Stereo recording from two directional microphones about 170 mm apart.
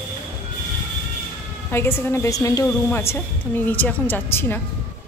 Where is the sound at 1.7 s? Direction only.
15° left (ahead or behind).